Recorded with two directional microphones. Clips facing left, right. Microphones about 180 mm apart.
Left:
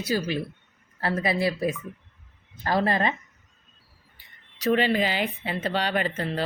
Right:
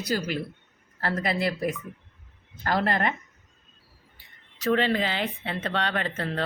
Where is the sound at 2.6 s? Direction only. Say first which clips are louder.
Left 2 dB; 20° left (ahead or behind).